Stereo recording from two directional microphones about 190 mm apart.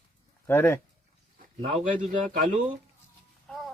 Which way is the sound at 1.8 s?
45° right (ahead or behind).